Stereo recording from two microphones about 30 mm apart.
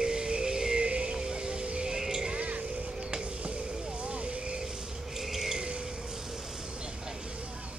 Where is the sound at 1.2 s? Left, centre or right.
Right.